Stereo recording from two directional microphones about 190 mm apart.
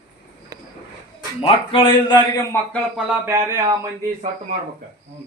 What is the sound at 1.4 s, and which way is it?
Speech, 25° left (ahead or behind).